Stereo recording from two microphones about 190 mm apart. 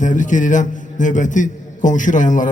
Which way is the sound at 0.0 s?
40° left (ahead or behind).